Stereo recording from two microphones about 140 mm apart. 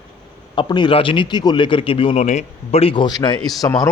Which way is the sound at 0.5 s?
35° left (ahead or behind).